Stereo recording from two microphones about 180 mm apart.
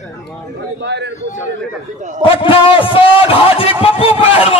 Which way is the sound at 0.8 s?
70° right (ahead or behind).